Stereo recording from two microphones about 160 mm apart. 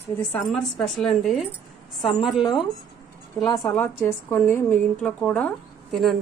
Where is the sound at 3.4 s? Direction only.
20° left (ahead or behind).